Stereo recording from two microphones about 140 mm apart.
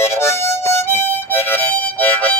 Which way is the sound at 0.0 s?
20° left (ahead or behind).